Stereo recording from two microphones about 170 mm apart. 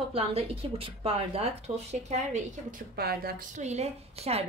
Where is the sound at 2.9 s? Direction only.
65° right (ahead or behind).